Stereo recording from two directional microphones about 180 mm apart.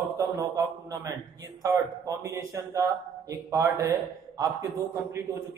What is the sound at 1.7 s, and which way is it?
A man's voice, 15° right (ahead or behind).